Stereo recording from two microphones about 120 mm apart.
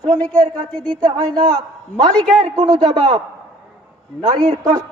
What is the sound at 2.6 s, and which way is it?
A man's voice, 40° right (ahead or behind).